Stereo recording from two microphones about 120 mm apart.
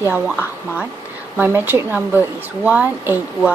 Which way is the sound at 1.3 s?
15° right (ahead or behind).